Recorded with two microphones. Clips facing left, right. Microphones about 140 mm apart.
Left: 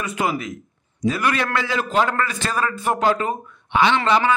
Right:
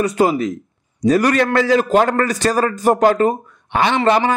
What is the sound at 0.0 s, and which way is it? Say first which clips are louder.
A man's voice: right 8 dB; 35° right (ahead or behind).